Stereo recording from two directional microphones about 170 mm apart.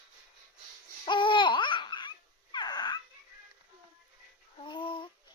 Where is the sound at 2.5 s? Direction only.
25° left (ahead or behind).